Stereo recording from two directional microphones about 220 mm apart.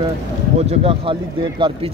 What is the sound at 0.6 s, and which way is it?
A man's voice, 25° right (ahead or behind).